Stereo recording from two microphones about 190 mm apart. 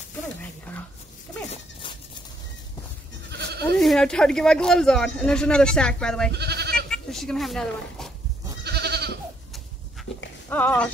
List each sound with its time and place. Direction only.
1.5 s goat: 25° left (ahead or behind)
3.3 s goat: 60° right (ahead or behind)
3.7 s speech: centre (ahead or behind)
6.3 s goat: 60° right (ahead or behind)
6.9 s a woman's voice: centre (ahead or behind)
8.6 s goat: 60° right (ahead or behind)
10.1 s dog: 65° left (ahead or behind)
10.5 s speech: 10° left (ahead or behind)